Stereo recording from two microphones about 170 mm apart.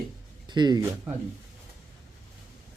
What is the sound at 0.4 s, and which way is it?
Speech, 25° right (ahead or behind).